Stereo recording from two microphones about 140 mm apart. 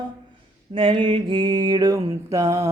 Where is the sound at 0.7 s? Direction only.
35° right (ahead or behind).